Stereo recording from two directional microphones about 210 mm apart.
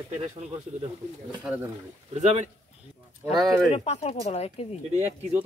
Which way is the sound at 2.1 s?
30° right (ahead or behind).